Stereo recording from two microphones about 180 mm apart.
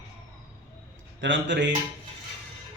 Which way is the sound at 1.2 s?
90° right.